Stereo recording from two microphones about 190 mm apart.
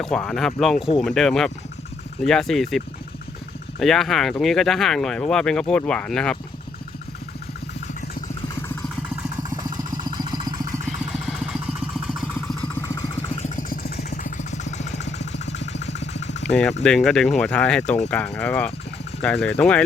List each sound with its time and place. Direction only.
0.0 s speech: 5° left (ahead or behind)
9.6 s vehicle: 20° right (ahead or behind)
10.8 s vehicle: centre (ahead or behind)
12.6 s vehicle: 15° left (ahead or behind)
13.3 s vehicle: 40° left (ahead or behind)
14.1 s vehicle: 40° left (ahead or behind)
16.1 s engine: 40° left (ahead or behind)
16.8 s speech: centre (ahead or behind)